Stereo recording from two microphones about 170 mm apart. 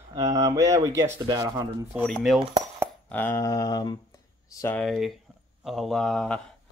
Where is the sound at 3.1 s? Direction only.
15° left (ahead or behind).